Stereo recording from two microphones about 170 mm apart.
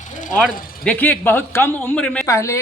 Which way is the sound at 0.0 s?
45° left (ahead or behind).